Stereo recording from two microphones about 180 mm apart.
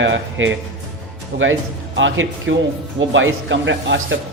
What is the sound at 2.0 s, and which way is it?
Speech, 90° right.